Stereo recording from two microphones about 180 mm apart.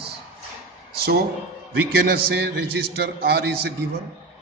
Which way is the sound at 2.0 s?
65° right (ahead or behind).